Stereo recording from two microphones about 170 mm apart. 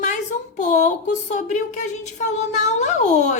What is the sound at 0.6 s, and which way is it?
Speech, 45° left (ahead or behind).